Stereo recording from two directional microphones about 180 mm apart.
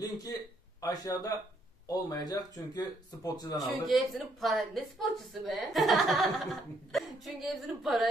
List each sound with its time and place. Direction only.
0.7 s speech: 20° left (ahead or behind)
3.5 s a woman's voice: centre (ahead or behind)